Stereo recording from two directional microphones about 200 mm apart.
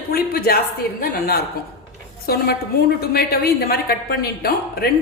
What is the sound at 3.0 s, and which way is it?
A woman's voice, 50° left (ahead or behind).